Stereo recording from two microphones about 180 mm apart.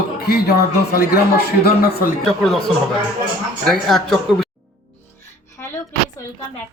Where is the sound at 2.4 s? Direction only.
Centre (ahead or behind).